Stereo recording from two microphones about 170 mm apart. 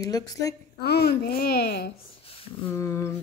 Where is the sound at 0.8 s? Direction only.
70° left (ahead or behind).